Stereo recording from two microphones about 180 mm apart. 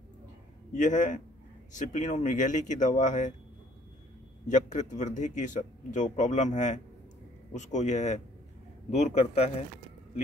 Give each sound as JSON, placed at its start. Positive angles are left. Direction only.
{"t": 0.7, "sound": "speech", "side_deg": 45}
{"t": 4.5, "sound": "a man's voice", "side_deg": 40}